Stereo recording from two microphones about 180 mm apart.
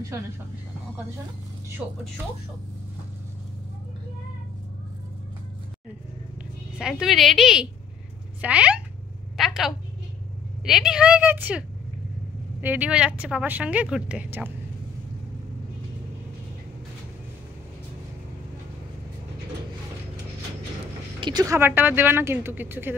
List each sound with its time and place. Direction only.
6.8 s a woman's voice: centre (ahead or behind)
9.4 s a sound: centre (ahead or behind)
10.6 s a woman's voice: 5° right (ahead or behind)
21.2 s speech: 25° right (ahead or behind)
21.5 s speech: 10° right (ahead or behind)